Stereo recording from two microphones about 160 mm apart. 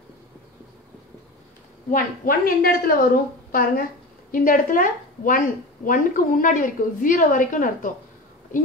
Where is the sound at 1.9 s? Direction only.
60° left (ahead or behind).